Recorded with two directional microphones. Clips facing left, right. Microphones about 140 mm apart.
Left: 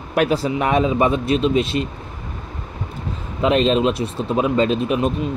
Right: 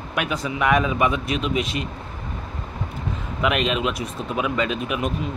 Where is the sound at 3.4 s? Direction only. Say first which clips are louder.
Left 6 dB; 30° left (ahead or behind).